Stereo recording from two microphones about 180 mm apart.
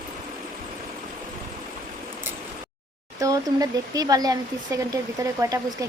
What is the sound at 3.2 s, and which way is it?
Speech, 20° right (ahead or behind).